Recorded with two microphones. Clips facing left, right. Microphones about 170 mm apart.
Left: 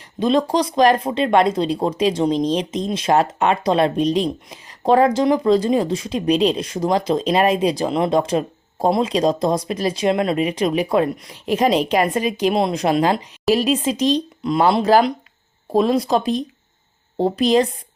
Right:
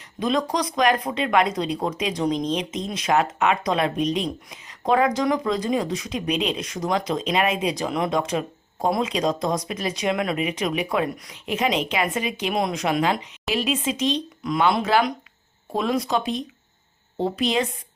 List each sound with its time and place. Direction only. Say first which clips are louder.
0.2 s speech: left 6 dB; 30° left (ahead or behind)